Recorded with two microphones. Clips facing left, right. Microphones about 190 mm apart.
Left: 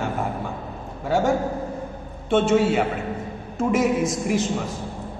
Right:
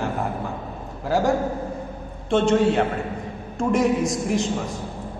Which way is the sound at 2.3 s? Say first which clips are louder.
Even; 5° left (ahead or behind).